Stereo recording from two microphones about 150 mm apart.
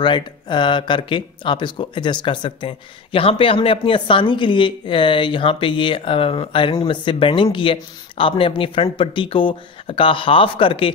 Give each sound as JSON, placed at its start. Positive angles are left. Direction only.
{"t": 0.0, "sound": "speech", "side_deg": 30}